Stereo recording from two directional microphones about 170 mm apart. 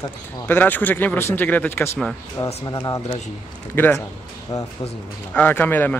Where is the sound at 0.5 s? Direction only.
10° left (ahead or behind).